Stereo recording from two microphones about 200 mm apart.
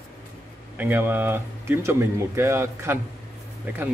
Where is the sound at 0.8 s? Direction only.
10° right (ahead or behind).